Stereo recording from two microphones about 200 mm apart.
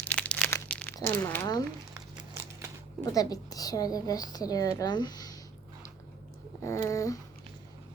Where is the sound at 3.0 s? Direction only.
15° left (ahead or behind).